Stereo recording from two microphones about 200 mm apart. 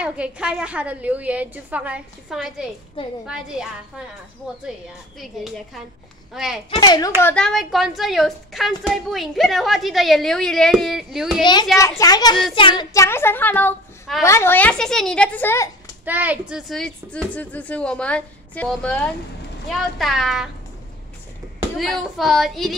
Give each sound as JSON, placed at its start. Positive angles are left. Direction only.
{"t": 0.0, "sound": "a woman's voice", "side_deg": -5}
{"t": 6.3, "sound": "speech", "side_deg": 0}
{"t": 6.7, "sound": "a child's voice", "side_deg": 20}
{"t": 7.2, "sound": "speech", "side_deg": 10}
{"t": 12.0, "sound": "a child's voice", "side_deg": 20}
{"t": 16.1, "sound": "speech", "side_deg": -10}
{"t": 21.7, "sound": "speech", "side_deg": 0}